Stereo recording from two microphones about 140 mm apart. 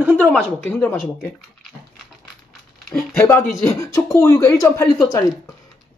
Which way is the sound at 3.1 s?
15° left (ahead or behind).